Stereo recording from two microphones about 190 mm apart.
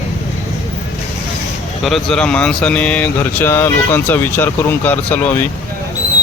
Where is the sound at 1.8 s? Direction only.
Centre (ahead or behind).